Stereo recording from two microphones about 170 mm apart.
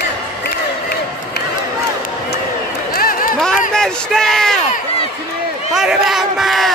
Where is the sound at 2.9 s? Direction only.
60° left (ahead or behind).